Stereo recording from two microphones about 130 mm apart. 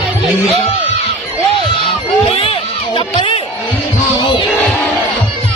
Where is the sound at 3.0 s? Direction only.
40° left (ahead or behind).